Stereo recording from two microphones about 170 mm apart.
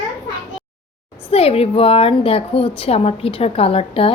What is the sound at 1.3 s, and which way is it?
A woman's voice, 35° left (ahead or behind).